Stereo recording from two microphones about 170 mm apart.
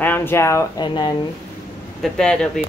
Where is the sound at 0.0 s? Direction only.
10° left (ahead or behind).